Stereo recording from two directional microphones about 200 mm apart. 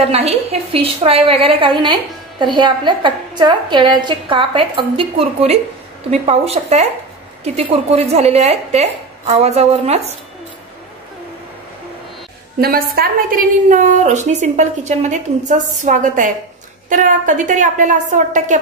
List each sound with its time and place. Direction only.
0.0 s a woman's voice: 30° right (ahead or behind)
12.5 s a woman's voice: 50° right (ahead or behind)